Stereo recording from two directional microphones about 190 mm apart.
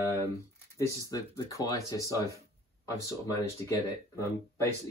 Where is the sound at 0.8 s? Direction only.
15° left (ahead or behind).